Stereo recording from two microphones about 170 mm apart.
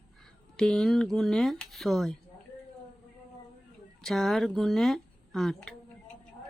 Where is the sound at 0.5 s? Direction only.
5° left (ahead or behind).